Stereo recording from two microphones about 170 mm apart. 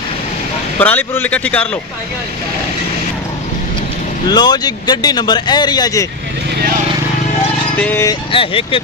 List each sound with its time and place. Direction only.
0.7 s speech: 10° left (ahead or behind)
4.3 s speech: 25° left (ahead or behind)
7.7 s speech: 10° left (ahead or behind)
8.3 s speech: 30° left (ahead or behind)